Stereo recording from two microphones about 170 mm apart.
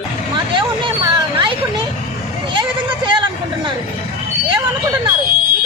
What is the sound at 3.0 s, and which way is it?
Speech, 25° right (ahead or behind).